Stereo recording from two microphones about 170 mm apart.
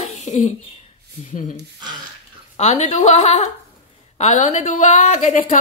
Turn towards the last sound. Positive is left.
turn(degrees=45)  # may be behind; listen again after turning